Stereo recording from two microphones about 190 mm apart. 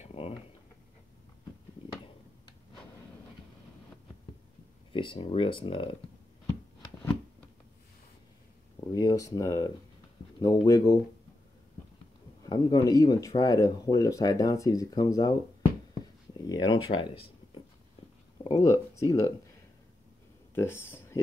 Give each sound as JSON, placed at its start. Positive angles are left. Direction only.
{"t": 0.0, "sound": "a sound", "side_deg": 30}
{"t": 4.9, "sound": "speech", "side_deg": 25}
{"t": 8.9, "sound": "speech", "side_deg": 20}
{"t": 12.4, "sound": "speech", "side_deg": 20}
{"t": 16.3, "sound": "speech", "side_deg": 20}
{"t": 18.4, "sound": "a sound", "side_deg": 20}
{"t": 20.5, "sound": "speech", "side_deg": 10}